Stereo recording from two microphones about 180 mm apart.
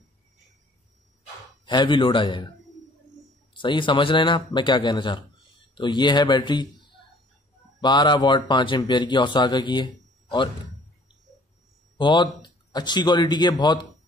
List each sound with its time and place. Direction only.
1.7 s a man's voice: 25° left (ahead or behind)
3.5 s a man's voice: 25° left (ahead or behind)
7.8 s a man's voice: 25° left (ahead or behind)
12.0 s a man's voice: 25° left (ahead or behind)